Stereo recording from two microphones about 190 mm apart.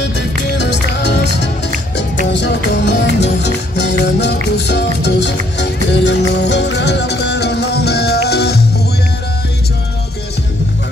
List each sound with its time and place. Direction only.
0.1 s music: 65° left (ahead or behind)